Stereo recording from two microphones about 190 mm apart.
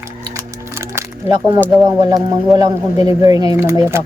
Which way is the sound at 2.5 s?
20° right (ahead or behind).